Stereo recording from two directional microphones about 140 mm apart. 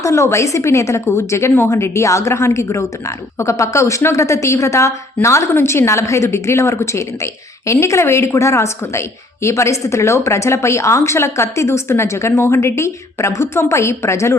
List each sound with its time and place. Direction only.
0.0 s a woman's voice: 20° left (ahead or behind)